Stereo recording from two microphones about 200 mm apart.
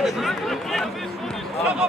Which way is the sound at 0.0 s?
Centre (ahead or behind).